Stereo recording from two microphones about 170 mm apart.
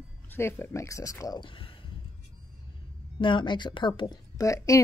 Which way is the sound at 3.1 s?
30° left (ahead or behind).